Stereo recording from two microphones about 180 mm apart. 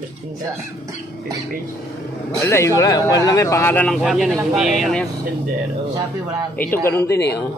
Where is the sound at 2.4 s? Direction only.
15° left (ahead or behind).